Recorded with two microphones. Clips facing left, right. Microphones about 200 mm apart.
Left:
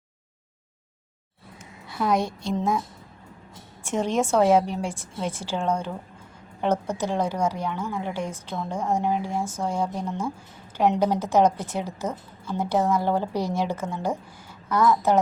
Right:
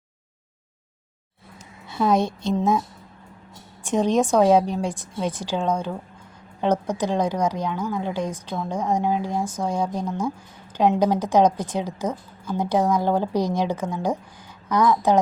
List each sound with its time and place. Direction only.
1.9 s a woman's voice: 25° right (ahead or behind)
3.8 s a woman's voice: 15° right (ahead or behind)